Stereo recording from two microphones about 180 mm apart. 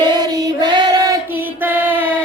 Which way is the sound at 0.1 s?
25° right (ahead or behind).